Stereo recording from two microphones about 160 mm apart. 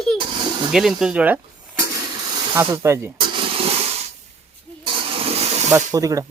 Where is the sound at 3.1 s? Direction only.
30° right (ahead or behind).